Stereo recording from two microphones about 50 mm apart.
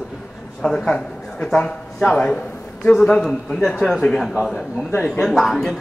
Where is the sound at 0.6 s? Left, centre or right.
Left.